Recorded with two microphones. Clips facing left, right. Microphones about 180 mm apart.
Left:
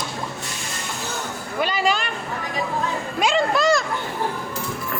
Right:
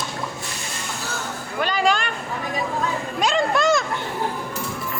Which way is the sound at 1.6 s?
5° left (ahead or behind).